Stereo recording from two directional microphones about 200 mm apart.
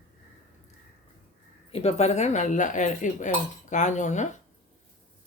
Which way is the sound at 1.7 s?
30° left (ahead or behind).